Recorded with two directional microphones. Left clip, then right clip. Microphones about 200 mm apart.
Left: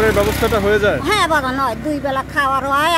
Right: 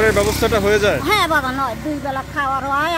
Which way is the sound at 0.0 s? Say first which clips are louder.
Even; centre (ahead or behind).